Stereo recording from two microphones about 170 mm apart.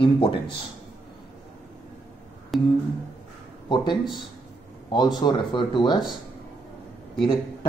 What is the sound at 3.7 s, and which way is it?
Speech, 25° left (ahead or behind).